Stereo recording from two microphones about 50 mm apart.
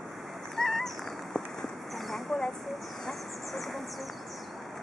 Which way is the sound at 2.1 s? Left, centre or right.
Centre.